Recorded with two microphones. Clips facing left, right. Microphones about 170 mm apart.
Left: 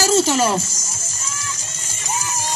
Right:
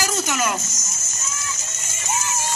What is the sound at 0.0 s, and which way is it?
Speech, 30° left (ahead or behind).